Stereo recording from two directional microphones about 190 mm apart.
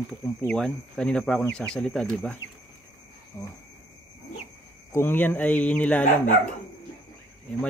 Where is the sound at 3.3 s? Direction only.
10° left (ahead or behind).